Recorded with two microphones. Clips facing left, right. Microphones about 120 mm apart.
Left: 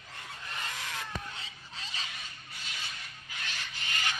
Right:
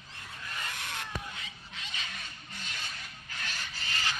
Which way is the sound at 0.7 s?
90° left.